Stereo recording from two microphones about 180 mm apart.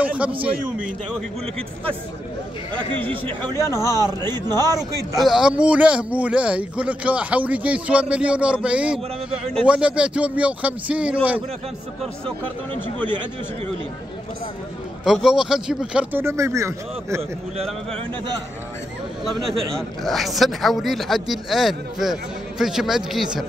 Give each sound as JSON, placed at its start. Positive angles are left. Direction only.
{"t": 0.0, "sound": "a man's voice", "side_deg": -5}
{"t": 3.5, "sound": "a man's voice", "side_deg": 15}
{"t": 3.8, "sound": "speech", "side_deg": -20}
{"t": 5.2, "sound": "a man's voice", "side_deg": -5}
{"t": 15.2, "sound": "a man's voice", "side_deg": -5}
{"t": 19.7, "sound": "a man's voice", "side_deg": 0}